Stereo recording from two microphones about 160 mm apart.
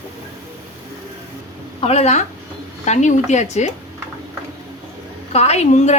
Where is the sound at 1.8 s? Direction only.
40° left (ahead or behind).